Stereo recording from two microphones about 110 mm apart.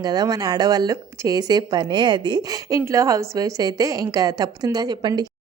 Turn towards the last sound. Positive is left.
turn(degrees=-40)  # may be behind; listen again after turning